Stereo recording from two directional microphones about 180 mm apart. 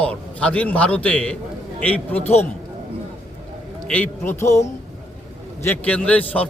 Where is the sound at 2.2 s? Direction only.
35° left (ahead or behind).